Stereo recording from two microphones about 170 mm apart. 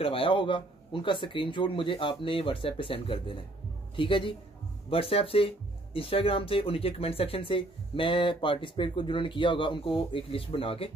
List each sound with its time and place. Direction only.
0.0 s a man's voice: 35° left (ahead or behind)